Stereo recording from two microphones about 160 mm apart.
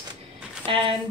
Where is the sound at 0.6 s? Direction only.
35° right (ahead or behind).